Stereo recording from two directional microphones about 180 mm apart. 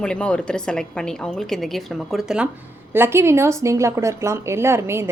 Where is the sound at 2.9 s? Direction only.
15° right (ahead or behind).